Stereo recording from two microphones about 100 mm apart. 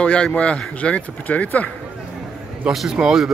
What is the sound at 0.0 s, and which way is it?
Speech, 10° left (ahead or behind).